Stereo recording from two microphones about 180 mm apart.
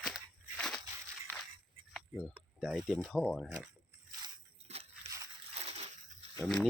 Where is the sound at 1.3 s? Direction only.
15° right (ahead or behind).